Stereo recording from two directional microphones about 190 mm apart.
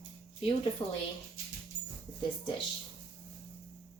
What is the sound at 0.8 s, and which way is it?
Speech, 25° left (ahead or behind).